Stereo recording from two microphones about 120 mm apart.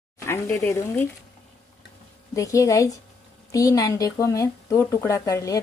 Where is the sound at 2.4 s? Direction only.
25° left (ahead or behind).